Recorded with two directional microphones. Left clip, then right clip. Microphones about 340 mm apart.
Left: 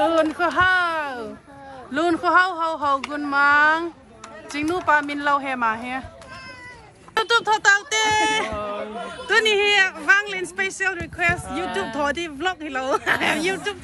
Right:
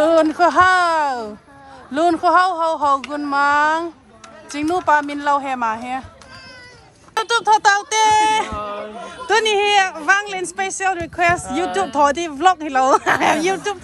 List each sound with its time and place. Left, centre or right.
0.0 s a sound: centre
1.9 s speech: centre
7.2 s speech: centre